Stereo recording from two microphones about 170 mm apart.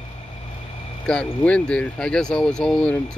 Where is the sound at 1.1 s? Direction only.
5° left (ahead or behind).